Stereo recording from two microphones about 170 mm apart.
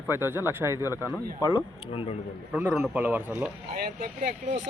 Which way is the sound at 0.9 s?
15° left (ahead or behind).